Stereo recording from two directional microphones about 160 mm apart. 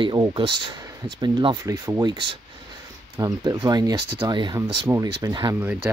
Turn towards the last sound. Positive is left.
turn(degrees=-25)  # may be behind; listen again after turning